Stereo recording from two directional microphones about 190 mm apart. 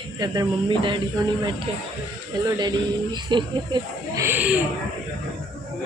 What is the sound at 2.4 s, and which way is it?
Speech, 20° right (ahead or behind).